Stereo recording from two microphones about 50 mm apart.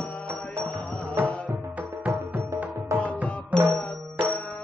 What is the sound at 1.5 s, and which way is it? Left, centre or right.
Music, right.